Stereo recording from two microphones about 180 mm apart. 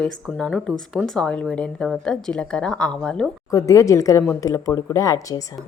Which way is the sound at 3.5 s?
15° left (ahead or behind).